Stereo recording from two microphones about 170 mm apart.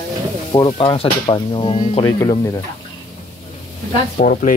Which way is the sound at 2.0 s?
20° left (ahead or behind).